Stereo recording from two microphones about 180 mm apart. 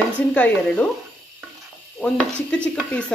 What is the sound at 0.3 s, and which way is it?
Stir, 5° left (ahead or behind).